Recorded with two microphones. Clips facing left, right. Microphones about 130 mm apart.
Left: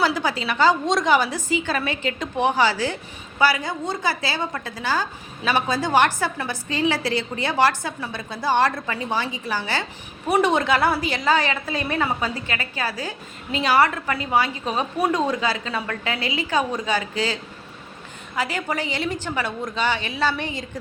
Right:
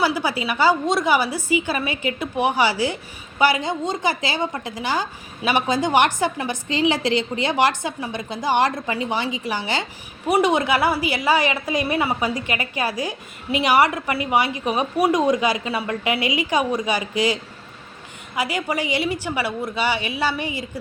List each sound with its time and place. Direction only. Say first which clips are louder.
0.0 s a woman's voice: right 1 dB; 10° right (ahead or behind)